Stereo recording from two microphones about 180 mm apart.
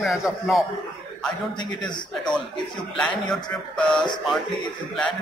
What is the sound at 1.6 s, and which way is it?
Speech, 25° left (ahead or behind).